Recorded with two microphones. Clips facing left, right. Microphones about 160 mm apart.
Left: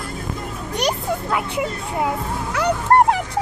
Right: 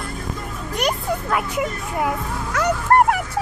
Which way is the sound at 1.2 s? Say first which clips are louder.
Right 1 dB; 25° left (ahead or behind).